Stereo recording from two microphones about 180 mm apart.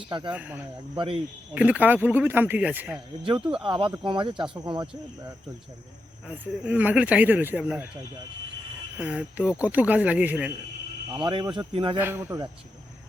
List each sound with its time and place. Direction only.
0.3 s speech: 10° right (ahead or behind)
0.9 s speech: 30° right (ahead or behind)
1.5 s speech: 10° right (ahead or behind)
3.5 s speech: 30° right (ahead or behind)
6.2 s speech: 10° right (ahead or behind)
9.0 s speech: 5° right (ahead or behind)
11.1 s speech: 25° right (ahead or behind)
11.9 s speech: 10° right (ahead or behind)